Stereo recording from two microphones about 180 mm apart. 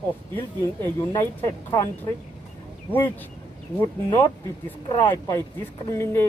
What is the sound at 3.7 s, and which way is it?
Speech, 20° left (ahead or behind).